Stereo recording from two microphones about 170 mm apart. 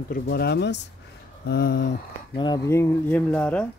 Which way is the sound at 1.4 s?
65° left (ahead or behind).